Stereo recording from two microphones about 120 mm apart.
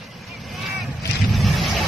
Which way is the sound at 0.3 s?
Centre (ahead or behind).